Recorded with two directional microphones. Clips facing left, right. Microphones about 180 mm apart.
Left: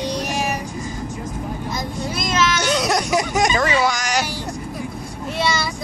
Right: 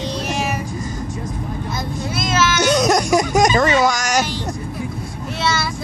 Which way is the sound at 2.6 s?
40° right (ahead or behind).